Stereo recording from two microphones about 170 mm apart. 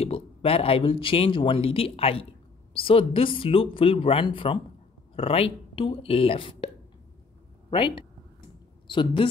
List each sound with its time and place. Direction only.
0.0 s speech: 35° left (ahead or behind)
8.8 s speech: 30° left (ahead or behind)